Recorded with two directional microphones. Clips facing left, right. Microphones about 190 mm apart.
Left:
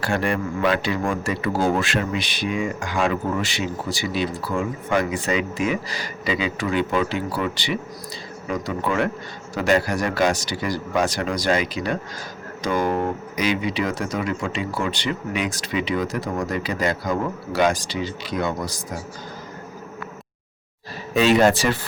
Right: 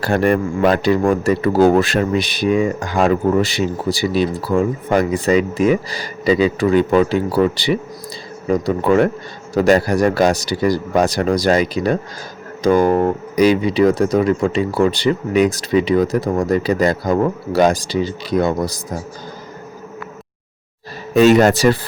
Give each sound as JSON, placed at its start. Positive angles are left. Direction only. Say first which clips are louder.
{"t": 0.0, "sound": "speech", "louder": "right 7 dB", "side_deg": -40}
{"t": 1.5, "sound": "speech", "louder": "right 9 dB", "side_deg": -60}
{"t": 1.8, "sound": "speech", "louder": "right 7 dB", "side_deg": -40}
{"t": 21.1, "sound": "speech", "louder": "right 6 dB", "side_deg": -45}